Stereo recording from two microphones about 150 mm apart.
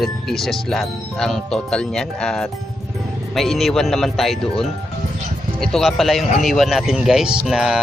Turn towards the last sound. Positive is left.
turn(degrees=-5)  # may be behind; listen again after turning